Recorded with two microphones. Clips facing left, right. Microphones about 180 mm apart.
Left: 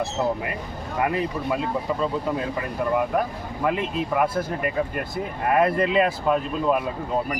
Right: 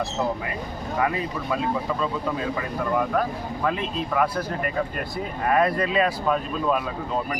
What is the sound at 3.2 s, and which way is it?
Speech, 15° left (ahead or behind).